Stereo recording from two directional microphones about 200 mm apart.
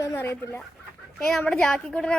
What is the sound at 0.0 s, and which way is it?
A child's voice, 10° left (ahead or behind).